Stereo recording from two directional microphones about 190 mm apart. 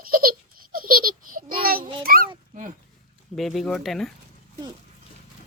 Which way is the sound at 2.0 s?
50° right (ahead or behind).